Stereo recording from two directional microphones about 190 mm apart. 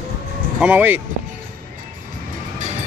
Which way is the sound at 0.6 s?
10° right (ahead or behind).